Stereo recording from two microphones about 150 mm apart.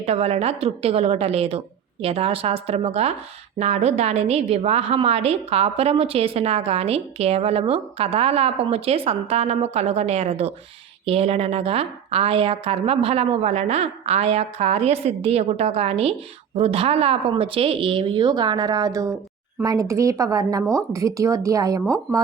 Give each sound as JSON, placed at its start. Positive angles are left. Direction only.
{"t": 0.0, "sound": "a woman's voice", "side_deg": -45}